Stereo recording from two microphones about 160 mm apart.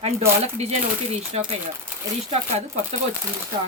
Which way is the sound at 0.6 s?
40° right (ahead or behind).